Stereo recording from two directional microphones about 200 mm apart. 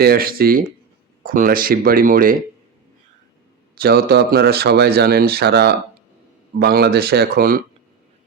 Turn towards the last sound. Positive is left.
turn(degrees=-50)  # may be behind; listen again after turning